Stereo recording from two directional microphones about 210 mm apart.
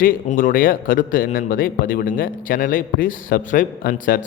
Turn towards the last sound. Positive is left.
turn(degrees=40)  # may be behind; listen again after turning